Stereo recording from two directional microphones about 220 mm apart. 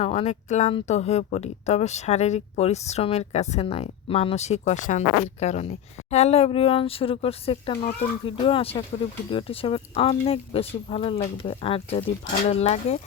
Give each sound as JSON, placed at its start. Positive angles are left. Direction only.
{"t": 0.0, "sound": "speech", "side_deg": 25}